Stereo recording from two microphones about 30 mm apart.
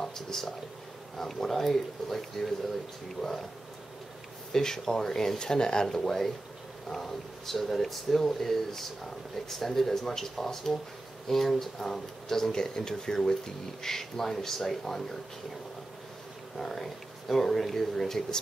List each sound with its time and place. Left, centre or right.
0.0 s speech: centre
4.5 s speech: centre
5.9 s speech: centre
16.6 s speech: centre